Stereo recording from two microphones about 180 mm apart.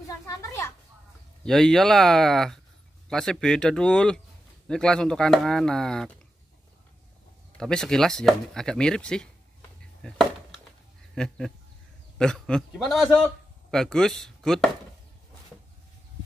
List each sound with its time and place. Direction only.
0.3 s children playing: 15° left (ahead or behind)
1.4 s speech: 5° left (ahead or behind)
7.5 s speech: 5° left (ahead or behind)
11.1 s speech: 5° left (ahead or behind)